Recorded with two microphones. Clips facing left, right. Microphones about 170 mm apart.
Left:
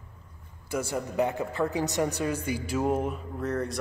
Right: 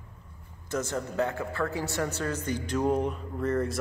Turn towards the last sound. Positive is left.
turn(degrees=0)  # may be behind; listen again after turning